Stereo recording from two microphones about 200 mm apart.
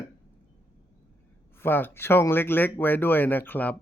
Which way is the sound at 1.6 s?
10° left (ahead or behind).